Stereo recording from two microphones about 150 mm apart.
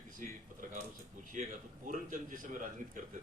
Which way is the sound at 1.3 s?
60° right (ahead or behind).